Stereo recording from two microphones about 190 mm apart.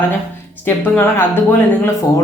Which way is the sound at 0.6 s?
10° left (ahead or behind).